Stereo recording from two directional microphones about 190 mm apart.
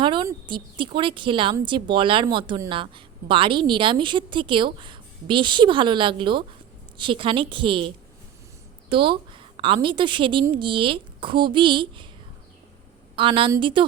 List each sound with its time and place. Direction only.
0.0 s a woman's voice: 25° right (ahead or behind)
13.1 s a woman's voice: 25° right (ahead or behind)